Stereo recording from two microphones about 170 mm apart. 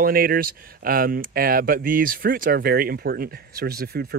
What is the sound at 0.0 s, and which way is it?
Speech, 60° right (ahead or behind).